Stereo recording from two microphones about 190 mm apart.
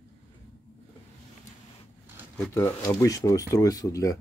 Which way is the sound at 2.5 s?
15° left (ahead or behind).